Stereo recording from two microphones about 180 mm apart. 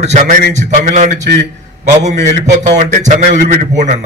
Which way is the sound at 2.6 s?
45° right (ahead or behind).